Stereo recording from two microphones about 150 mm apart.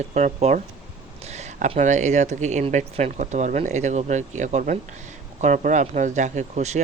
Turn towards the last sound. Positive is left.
turn(degrees=-50)  # may be behind; listen again after turning